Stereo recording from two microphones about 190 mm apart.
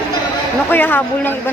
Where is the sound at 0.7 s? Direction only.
10° left (ahead or behind).